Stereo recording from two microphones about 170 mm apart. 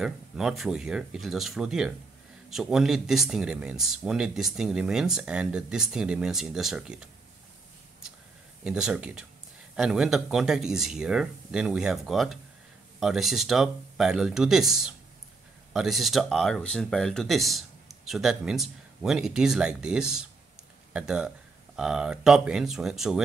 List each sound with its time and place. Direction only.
0.0 s speech: centre (ahead or behind)
8.6 s speech: 5° right (ahead or behind)